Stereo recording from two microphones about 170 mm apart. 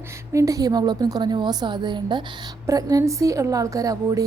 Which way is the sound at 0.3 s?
20° right (ahead or behind).